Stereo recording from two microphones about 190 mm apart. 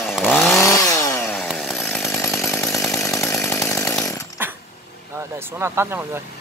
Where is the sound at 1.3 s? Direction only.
Centre (ahead or behind).